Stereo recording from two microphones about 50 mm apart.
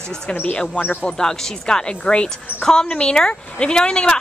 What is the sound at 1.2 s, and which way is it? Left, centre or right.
A woman's voice, centre.